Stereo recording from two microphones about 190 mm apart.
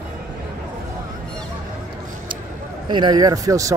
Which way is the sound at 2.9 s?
20° right (ahead or behind).